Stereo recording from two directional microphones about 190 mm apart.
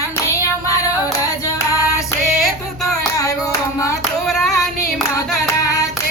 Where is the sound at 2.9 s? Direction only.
20° left (ahead or behind).